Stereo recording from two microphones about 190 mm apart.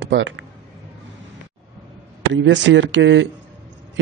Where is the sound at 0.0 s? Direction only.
80° right.